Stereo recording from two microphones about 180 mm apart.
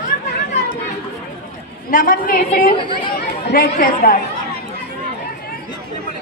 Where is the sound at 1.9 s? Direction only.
50° left (ahead or behind).